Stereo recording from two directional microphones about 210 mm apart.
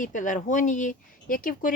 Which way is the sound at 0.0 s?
40° left (ahead or behind).